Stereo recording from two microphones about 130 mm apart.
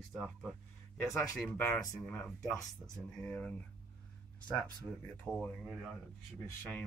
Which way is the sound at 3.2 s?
10° left (ahead or behind).